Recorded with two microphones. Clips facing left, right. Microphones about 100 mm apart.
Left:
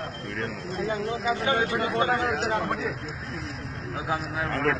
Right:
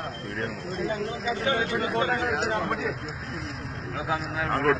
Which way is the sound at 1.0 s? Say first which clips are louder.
Left 2 dB; 30° left (ahead or behind).